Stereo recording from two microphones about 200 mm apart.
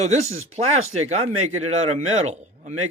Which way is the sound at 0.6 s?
35° right (ahead or behind).